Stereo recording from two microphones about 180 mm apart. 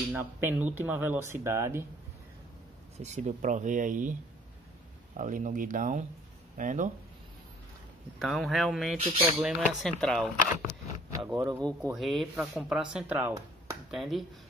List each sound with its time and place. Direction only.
0.1 s speech: 10° right (ahead or behind)
3.0 s speech: 40° right (ahead or behind)
8.2 s speech: centre (ahead or behind)
11.1 s speech: 20° right (ahead or behind)
11.9 s speech: centre (ahead or behind)
13.8 s speech: centre (ahead or behind)